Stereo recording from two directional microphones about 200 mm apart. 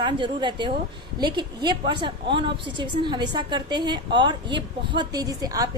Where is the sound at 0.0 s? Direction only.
25° right (ahead or behind).